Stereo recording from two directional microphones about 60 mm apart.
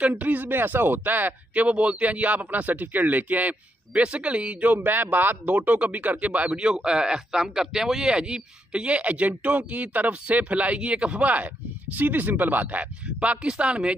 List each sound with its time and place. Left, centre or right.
0.0 s speech: right
4.7 s speech: right; by 13.9 s centre